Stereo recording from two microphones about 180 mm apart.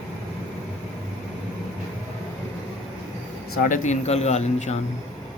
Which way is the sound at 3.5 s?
45° left (ahead or behind).